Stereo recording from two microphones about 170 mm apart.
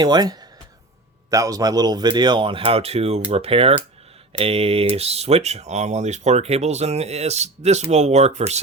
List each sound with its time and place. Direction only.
0.0 s speech: 25° right (ahead or behind); by 8.6 s 40° right (ahead or behind)